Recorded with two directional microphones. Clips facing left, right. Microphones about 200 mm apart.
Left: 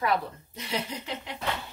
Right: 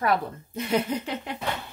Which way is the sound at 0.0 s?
50° right (ahead or behind).